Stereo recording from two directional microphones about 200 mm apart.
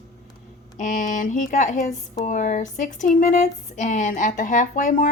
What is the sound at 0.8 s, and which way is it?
A woman's voice, 40° left (ahead or behind).